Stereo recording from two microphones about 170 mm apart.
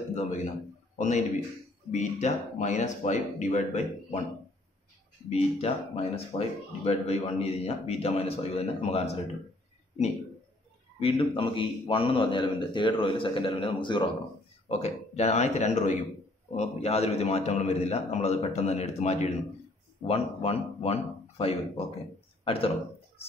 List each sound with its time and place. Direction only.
0.1 s a man's voice: 45° left (ahead or behind)
5.3 s speech: 35° left (ahead or behind)
11.0 s speech: 35° left (ahead or behind)
14.7 s speech: 40° left (ahead or behind)
22.4 s a sound: 35° left (ahead or behind)